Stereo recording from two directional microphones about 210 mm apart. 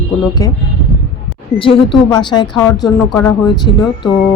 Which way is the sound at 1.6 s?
25° left (ahead or behind).